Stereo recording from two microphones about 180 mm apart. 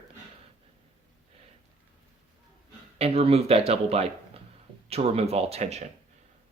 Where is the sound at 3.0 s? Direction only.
35° right (ahead or behind).